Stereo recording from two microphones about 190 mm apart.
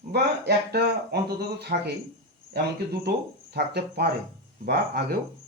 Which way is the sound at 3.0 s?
60° right (ahead or behind).